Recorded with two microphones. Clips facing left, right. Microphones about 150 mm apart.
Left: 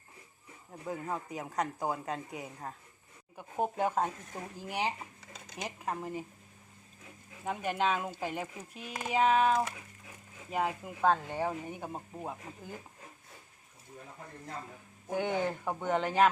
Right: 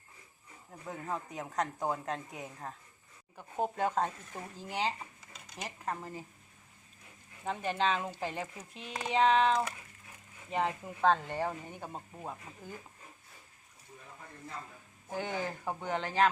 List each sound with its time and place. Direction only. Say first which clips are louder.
0.9 s a man's voice: left 2 dB; 5° left (ahead or behind)
7.4 s speech: even; 10° left (ahead or behind)
15.1 s speech: left 5 dB; 15° left (ahead or behind)
15.8 s a man's voice: left 3 dB; centre (ahead or behind)